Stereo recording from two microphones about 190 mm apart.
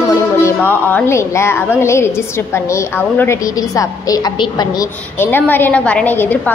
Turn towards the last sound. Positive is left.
turn(degrees=10)  # may be behind; listen again after turning